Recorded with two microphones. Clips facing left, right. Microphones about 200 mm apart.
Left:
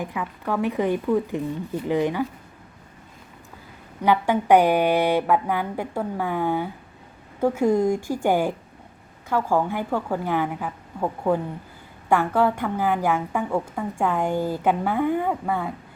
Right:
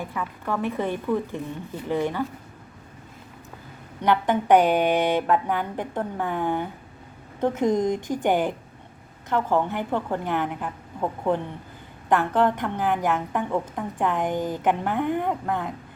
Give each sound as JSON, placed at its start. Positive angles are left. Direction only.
{"t": 0.0, "sound": "speech", "side_deg": 15}
{"t": 4.0, "sound": "speech", "side_deg": 10}